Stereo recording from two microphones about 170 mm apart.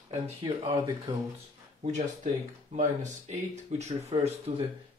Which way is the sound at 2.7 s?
45° right (ahead or behind).